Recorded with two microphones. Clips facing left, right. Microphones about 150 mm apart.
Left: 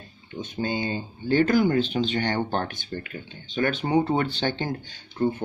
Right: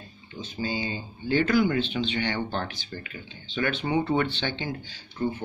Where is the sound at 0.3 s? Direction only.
55° left (ahead or behind).